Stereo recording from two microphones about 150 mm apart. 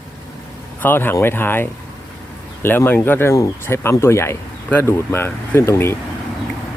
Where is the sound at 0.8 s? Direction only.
15° left (ahead or behind).